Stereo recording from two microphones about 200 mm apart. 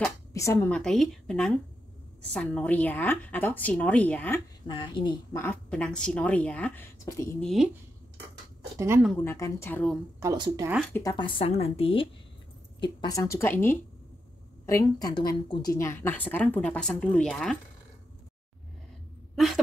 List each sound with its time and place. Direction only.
0.3 s a woman's voice: 15° left (ahead or behind)
4.6 s speech: 25° left (ahead or behind)
5.3 s a woman's voice: 10° left (ahead or behind)
7.4 s a woman's voice: centre (ahead or behind)
8.7 s speech: 10° right (ahead or behind)
9.0 s a woman's voice: 10° left (ahead or behind)
10.2 s speech: 20° right (ahead or behind)
10.9 s a woman's voice: 15° left (ahead or behind); by 17.6 s centre (ahead or behind)
19.3 s a sound: centre (ahead or behind)